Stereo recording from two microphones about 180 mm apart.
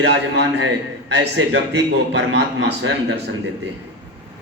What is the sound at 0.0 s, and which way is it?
A man's voice, 75° right (ahead or behind).